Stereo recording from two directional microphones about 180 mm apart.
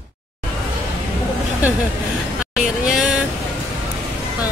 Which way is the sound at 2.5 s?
5° right (ahead or behind).